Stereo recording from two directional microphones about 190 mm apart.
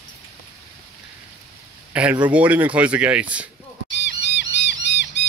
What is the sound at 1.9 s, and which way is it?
Speech, 5° right (ahead or behind).